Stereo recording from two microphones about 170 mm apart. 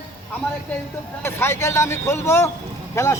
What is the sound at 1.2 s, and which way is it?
Speech, 15° left (ahead or behind).